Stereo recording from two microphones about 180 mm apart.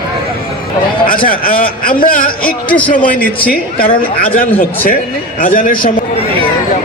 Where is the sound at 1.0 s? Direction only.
50° left (ahead or behind).